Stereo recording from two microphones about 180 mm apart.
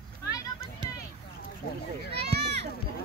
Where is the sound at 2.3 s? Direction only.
70° right (ahead or behind).